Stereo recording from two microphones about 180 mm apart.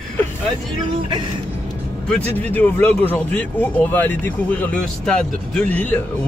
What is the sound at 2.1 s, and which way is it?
Speech, 10° left (ahead or behind).